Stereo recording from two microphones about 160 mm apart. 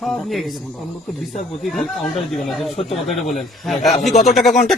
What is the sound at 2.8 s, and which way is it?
Speech, 45° left (ahead or behind).